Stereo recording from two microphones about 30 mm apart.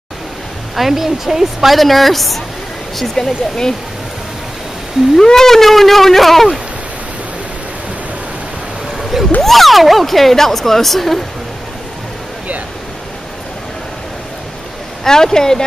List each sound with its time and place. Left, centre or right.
0.7 s speech: centre
1.8 s speech: centre
3.2 s speech: centre
5.1 s speech: centre
9.4 s speech: centre
15.0 s speech: centre